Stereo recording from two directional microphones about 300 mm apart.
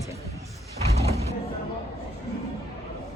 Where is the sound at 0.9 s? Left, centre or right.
Right.